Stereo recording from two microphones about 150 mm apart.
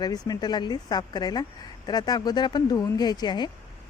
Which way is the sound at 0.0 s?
25° left (ahead or behind).